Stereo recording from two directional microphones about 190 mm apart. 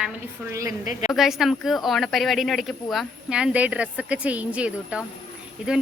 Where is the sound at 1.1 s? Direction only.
Centre (ahead or behind).